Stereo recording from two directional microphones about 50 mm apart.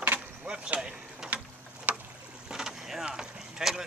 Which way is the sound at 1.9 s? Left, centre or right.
Right.